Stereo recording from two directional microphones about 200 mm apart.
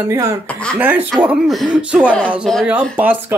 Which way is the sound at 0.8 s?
10° right (ahead or behind).